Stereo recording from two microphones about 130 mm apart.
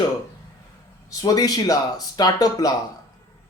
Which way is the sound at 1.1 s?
30° left (ahead or behind).